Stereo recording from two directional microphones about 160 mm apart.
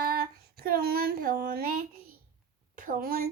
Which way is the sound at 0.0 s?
70° right (ahead or behind).